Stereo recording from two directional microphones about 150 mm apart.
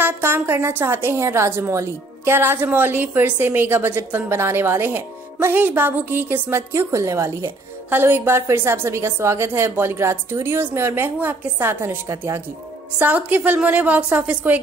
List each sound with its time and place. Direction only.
0.0 s a woman's voice: 15° right (ahead or behind)